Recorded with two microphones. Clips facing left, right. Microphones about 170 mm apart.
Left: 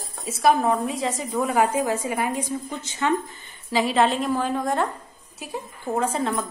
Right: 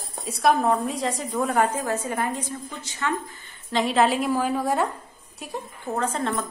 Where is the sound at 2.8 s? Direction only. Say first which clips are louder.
Left 4 dB; 20° left (ahead or behind).